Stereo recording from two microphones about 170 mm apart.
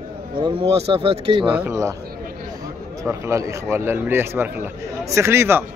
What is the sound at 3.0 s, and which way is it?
A man's voice, 15° right (ahead or behind).